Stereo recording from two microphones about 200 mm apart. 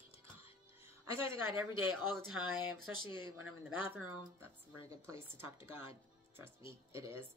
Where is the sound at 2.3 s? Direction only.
90° right.